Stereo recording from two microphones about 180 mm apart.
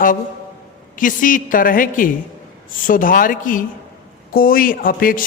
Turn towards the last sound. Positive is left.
turn(degrees=50)  # may be behind; listen again after turning